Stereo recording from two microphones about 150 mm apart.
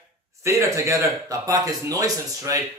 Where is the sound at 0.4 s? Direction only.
20° right (ahead or behind).